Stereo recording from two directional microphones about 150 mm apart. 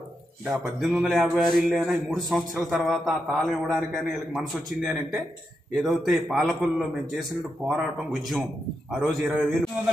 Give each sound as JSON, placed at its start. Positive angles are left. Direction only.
{"t": 0.5, "sound": "a man's voice", "side_deg": -5}
{"t": 1.7, "sound": "a man's voice", "side_deg": -10}
{"t": 2.0, "sound": "a man's voice", "side_deg": 0}